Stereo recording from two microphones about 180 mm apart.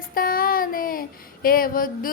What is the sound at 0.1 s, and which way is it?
Child singing, 50° left (ahead or behind).